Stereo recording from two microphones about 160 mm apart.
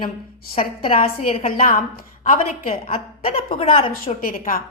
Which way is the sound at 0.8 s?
35° left (ahead or behind).